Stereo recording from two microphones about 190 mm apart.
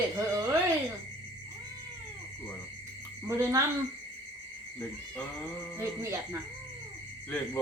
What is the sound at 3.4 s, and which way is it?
Speech, 15° right (ahead or behind).